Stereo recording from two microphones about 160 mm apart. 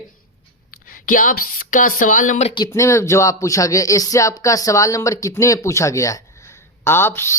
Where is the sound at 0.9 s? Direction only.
60° left (ahead or behind).